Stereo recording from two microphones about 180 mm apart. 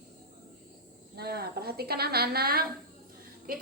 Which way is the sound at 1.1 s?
60° right (ahead or behind).